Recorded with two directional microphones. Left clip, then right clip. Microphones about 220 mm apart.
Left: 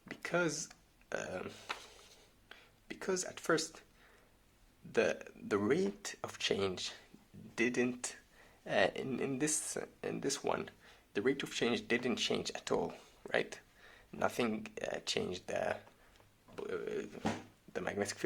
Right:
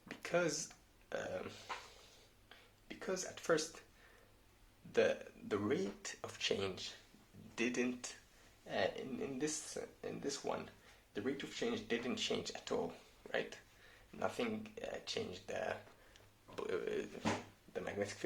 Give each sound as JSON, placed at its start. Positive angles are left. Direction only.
{"t": 0.1, "sound": "a sound", "side_deg": 20}
{"t": 4.9, "sound": "speech", "side_deg": 25}
{"t": 16.6, "sound": "speech", "side_deg": 10}
{"t": 17.7, "sound": "speech", "side_deg": 25}